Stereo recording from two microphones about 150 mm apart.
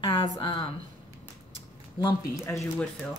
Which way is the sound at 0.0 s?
35° left (ahead or behind).